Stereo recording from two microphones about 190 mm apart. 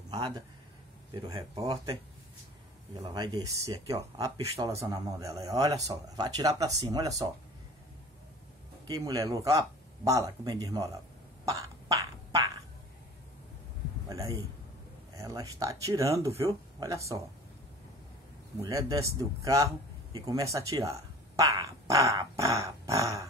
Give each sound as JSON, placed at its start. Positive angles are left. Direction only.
{"t": 0.1, "sound": "speech", "side_deg": -20}
{"t": 3.1, "sound": "speech", "side_deg": -20}
{"t": 8.8, "sound": "speech", "side_deg": -20}
{"t": 11.4, "sound": "beatboxing", "side_deg": -20}
{"t": 14.0, "sound": "a sound", "side_deg": -20}
{"t": 15.1, "sound": "speech", "side_deg": -20}
{"t": 18.6, "sound": "speech", "side_deg": -20}